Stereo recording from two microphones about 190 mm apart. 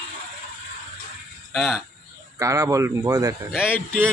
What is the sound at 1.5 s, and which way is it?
Speech, centre (ahead or behind).